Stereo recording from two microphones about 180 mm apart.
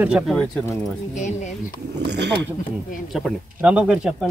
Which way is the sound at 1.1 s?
40° left (ahead or behind).